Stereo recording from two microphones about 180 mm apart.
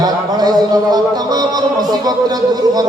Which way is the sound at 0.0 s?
20° right (ahead or behind).